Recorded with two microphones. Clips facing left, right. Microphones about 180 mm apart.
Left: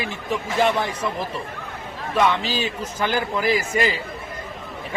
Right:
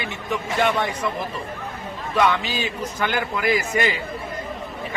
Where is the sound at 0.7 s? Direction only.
Centre (ahead or behind).